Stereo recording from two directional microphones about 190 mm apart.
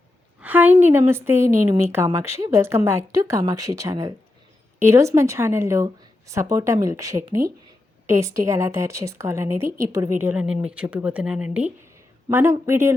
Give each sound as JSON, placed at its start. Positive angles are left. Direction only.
{"t": 0.3, "sound": "a woman's voice", "side_deg": -10}